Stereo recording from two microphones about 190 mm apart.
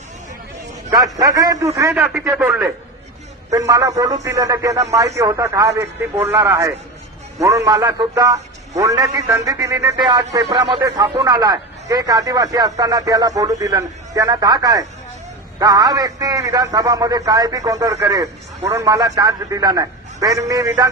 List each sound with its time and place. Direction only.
0.9 s a man's voice: 20° right (ahead or behind)
2.0 s a man's voice: centre (ahead or behind); by 20.9 s 20° right (ahead or behind)